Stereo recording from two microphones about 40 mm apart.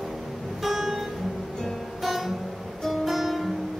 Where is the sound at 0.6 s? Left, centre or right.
Centre.